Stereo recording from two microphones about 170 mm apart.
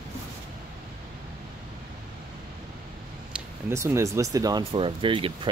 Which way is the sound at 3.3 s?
15° right (ahead or behind).